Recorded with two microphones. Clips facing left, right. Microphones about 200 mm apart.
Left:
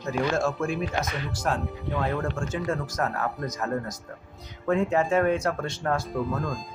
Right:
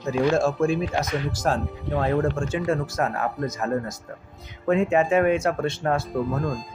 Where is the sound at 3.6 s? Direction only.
10° right (ahead or behind).